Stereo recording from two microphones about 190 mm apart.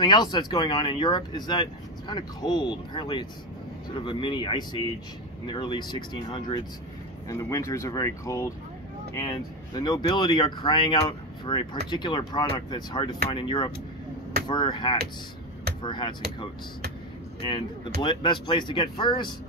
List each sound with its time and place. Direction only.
0.0 s speech: 25° left (ahead or behind)
18.0 s speech: 25° left (ahead or behind)